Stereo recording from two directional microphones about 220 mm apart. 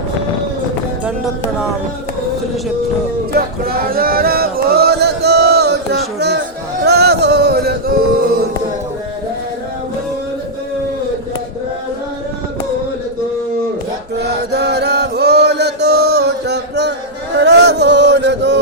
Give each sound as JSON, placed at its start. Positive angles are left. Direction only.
{"t": 3.3, "sound": "a sound", "side_deg": -45}
{"t": 6.8, "sound": "male singing", "side_deg": -45}
{"t": 14.2, "sound": "chant", "side_deg": -50}